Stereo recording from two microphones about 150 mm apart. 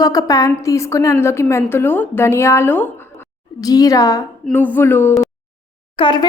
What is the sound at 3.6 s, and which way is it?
Speech, 25° left (ahead or behind).